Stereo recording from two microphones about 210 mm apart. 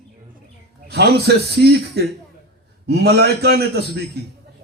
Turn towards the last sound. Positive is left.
turn(degrees=-50)  # may be behind; listen again after turning